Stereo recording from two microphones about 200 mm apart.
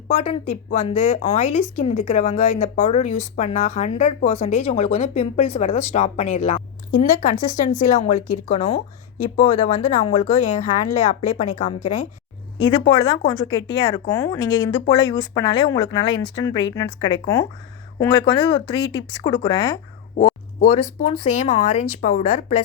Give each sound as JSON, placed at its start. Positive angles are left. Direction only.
{"t": 0.1, "sound": "a woman's voice", "side_deg": 35}
{"t": 12.5, "sound": "speech", "side_deg": 20}
{"t": 20.6, "sound": "a woman's voice", "side_deg": 35}